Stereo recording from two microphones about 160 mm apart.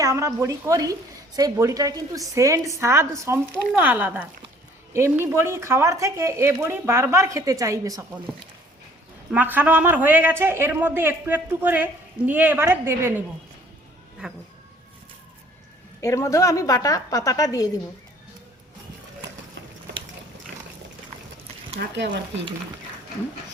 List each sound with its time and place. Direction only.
0.0 s a woman's voice: 20° right (ahead or behind)
9.3 s a man's voice: 10° right (ahead or behind)
16.0 s a woman's voice: 20° left (ahead or behind)
21.8 s speech: 90° right